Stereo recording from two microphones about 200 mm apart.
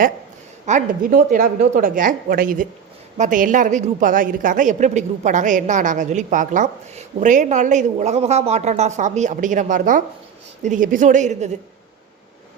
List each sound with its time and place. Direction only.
0.6 s a woman's voice: 35° right (ahead or behind)